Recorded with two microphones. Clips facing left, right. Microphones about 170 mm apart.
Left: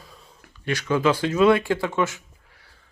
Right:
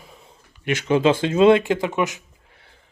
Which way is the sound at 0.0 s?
20° right (ahead or behind).